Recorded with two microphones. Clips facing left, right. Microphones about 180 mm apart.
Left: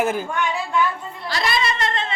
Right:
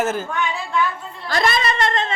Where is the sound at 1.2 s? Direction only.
50° right (ahead or behind).